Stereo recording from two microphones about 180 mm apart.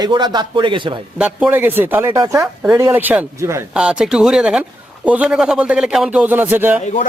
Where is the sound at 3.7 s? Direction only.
5° right (ahead or behind).